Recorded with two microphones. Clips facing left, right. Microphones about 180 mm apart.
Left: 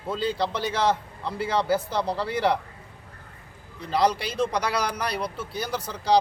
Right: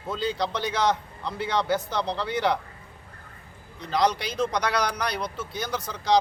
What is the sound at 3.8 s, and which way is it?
A man's voice, 5° left (ahead or behind).